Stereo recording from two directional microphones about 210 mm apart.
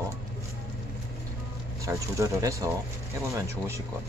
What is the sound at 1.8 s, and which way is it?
Speech, 15° right (ahead or behind).